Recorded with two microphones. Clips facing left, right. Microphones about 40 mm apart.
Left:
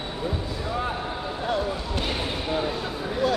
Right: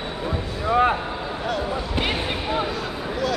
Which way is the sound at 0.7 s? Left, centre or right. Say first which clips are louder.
Right 11 dB; right.